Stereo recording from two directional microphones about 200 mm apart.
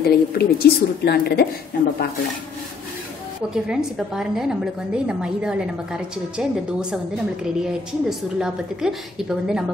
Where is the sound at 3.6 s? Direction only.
5° right (ahead or behind).